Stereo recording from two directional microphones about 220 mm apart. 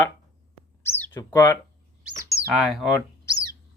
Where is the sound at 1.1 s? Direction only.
15° left (ahead or behind).